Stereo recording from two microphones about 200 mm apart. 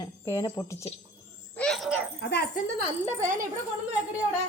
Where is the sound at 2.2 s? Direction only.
60° left (ahead or behind).